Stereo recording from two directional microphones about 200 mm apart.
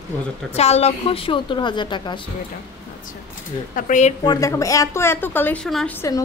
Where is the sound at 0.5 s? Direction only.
30° left (ahead or behind).